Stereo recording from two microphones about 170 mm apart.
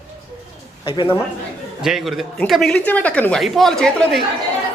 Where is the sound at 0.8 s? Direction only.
30° left (ahead or behind).